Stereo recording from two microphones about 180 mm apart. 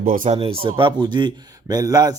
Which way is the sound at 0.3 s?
30° right (ahead or behind).